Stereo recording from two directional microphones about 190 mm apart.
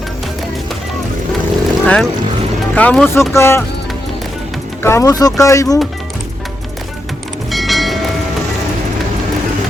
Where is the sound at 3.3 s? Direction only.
15° left (ahead or behind).